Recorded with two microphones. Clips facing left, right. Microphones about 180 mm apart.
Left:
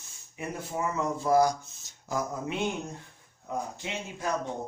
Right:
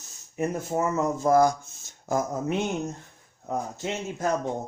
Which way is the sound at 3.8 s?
45° right (ahead or behind).